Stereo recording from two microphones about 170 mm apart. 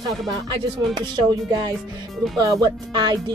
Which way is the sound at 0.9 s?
25° right (ahead or behind).